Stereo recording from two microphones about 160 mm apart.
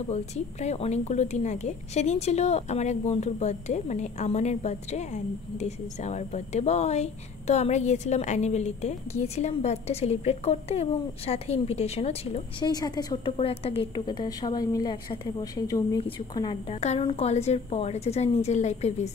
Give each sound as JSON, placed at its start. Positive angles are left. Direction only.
{"t": 0.1, "sound": "a woman's voice", "side_deg": 40}
{"t": 12.6, "sound": "a woman's voice", "side_deg": 25}
{"t": 16.8, "sound": "a woman's voice", "side_deg": 40}